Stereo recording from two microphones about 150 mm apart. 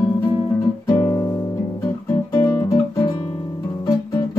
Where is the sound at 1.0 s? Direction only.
30° left (ahead or behind).